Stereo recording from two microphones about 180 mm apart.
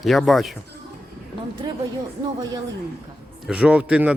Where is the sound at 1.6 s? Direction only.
25° right (ahead or behind).